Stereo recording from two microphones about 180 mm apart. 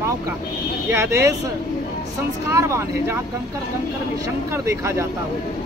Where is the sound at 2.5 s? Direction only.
15° right (ahead or behind).